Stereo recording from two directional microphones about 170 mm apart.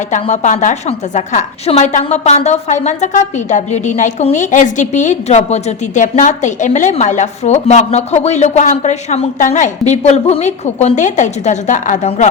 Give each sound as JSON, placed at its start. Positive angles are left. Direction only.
{"t": 0.2, "sound": "a woman's voice", "side_deg": 45}